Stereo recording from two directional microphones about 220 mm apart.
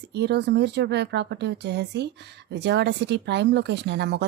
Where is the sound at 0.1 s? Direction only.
50° right (ahead or behind).